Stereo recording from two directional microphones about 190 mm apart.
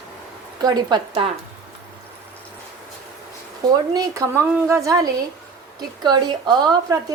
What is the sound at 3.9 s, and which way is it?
A woman's voice, 15° right (ahead or behind).